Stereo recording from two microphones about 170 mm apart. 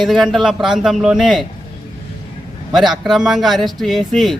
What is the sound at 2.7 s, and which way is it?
A man's voice, centre (ahead or behind).